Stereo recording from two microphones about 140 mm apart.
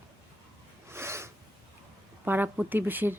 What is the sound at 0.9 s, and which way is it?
Snort, 20° right (ahead or behind).